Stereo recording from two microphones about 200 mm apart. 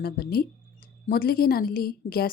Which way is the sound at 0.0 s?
50° left (ahead or behind).